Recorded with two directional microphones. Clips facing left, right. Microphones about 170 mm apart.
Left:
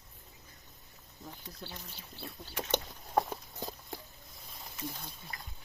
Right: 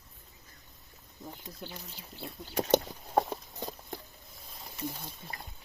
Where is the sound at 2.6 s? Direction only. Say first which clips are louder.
Right 8 dB; 35° right (ahead or behind).